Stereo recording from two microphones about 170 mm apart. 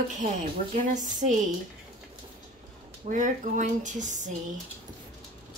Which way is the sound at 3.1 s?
50° right (ahead or behind).